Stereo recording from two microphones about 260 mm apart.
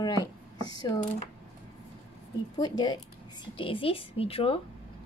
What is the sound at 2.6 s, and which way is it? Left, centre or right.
A woman's voice, centre.